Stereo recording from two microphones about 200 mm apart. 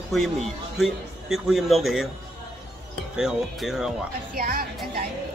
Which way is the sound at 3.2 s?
Centre (ahead or behind).